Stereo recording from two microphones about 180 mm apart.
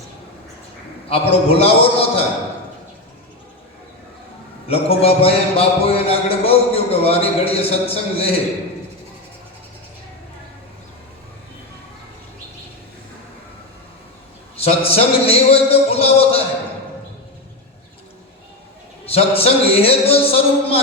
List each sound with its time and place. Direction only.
1.0 s speech: 35° left (ahead or behind)
4.7 s speech: 35° left (ahead or behind)
14.5 s speech: 35° left (ahead or behind)
19.0 s speech: 35° left (ahead or behind)